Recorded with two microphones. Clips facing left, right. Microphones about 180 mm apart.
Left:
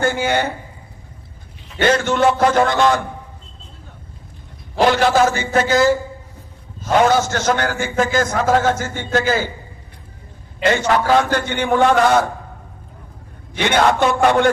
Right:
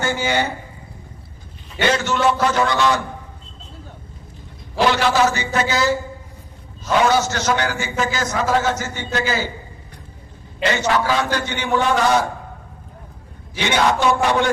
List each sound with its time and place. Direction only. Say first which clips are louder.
0.0 s speech: left 3 dB; 55° left (ahead or behind)
1.8 s a man's voice: left 3 dB; 50° left (ahead or behind)
4.8 s a man's voice: left 3 dB; 50° left (ahead or behind)
10.6 s a man's voice: left 2 dB; 50° left (ahead or behind)
13.6 s a man's voice: left 3 dB; 55° left (ahead or behind)